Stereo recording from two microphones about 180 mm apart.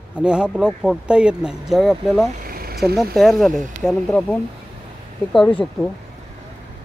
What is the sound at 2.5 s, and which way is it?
Vehicle, 55° right (ahead or behind).